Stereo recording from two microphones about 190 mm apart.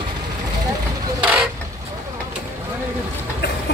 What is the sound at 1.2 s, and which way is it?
Vehicle, 5° right (ahead or behind).